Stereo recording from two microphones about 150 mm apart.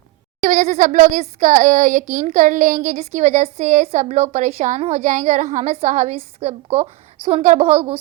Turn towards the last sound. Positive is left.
turn(degrees=-40)  # may be behind; listen again after turning